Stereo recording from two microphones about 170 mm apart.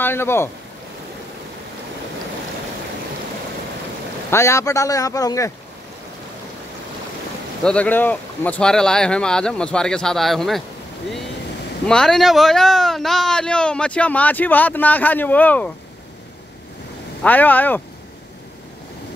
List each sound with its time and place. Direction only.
0.0 s speech: 15° left (ahead or behind)
4.3 s a man's voice: 15° left (ahead or behind)
7.6 s speech: 10° left (ahead or behind)
11.8 s speech: 5° left (ahead or behind)
17.2 s speech: 10° left (ahead or behind)